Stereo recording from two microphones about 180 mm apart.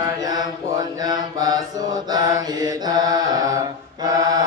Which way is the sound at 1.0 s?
20° right (ahead or behind).